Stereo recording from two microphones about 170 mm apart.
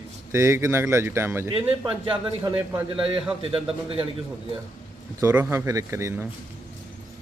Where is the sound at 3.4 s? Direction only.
35° right (ahead or behind).